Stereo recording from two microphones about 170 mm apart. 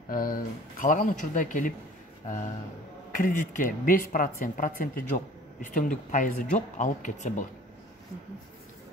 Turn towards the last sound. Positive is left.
turn(degrees=50)  # may be behind; listen again after turning